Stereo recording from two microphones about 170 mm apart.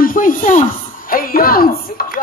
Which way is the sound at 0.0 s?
55° left (ahead or behind).